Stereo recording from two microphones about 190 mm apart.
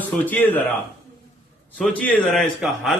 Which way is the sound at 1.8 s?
5° left (ahead or behind).